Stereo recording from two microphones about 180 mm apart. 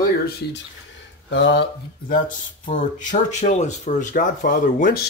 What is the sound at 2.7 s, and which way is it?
Speech, 40° left (ahead or behind).